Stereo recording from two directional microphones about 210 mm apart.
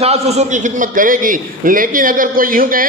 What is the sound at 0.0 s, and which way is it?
A man's voice, 30° right (ahead or behind).